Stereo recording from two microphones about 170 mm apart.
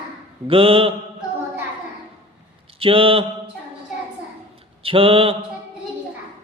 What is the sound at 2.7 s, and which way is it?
Mantra, 30° right (ahead or behind).